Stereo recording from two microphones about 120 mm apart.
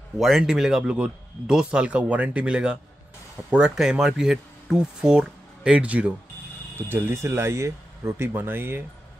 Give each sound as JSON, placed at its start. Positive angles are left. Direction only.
{"t": 0.2, "sound": "speech", "side_deg": -5}